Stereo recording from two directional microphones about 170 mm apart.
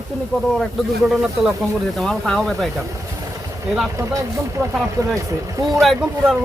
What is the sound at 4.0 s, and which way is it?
Speech, 20° right (ahead or behind).